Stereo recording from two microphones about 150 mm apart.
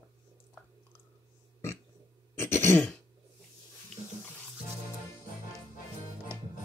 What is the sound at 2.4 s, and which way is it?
Throat clearing, 15° left (ahead or behind).